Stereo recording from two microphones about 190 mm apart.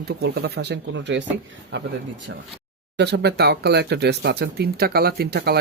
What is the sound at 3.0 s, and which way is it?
Speech, 65° right (ahead or behind).